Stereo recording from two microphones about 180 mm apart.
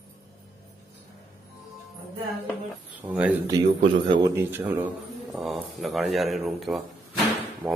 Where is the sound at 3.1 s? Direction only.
10° right (ahead or behind).